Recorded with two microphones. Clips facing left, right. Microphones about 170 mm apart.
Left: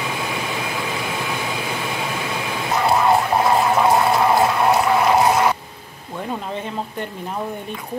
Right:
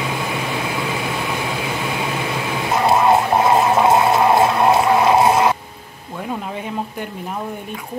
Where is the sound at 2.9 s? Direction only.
25° right (ahead or behind).